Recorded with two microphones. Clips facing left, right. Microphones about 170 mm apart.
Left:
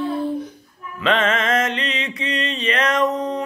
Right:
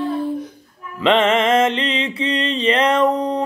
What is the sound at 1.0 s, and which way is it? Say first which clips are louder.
Mantra: right 5 dB; 25° right (ahead or behind).